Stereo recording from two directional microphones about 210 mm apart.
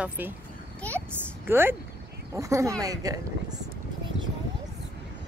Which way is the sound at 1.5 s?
10° right (ahead or behind).